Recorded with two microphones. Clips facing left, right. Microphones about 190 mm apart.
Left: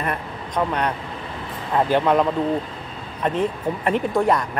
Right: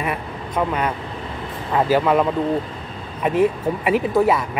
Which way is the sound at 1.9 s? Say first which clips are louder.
Right 1 dB; 5° right (ahead or behind).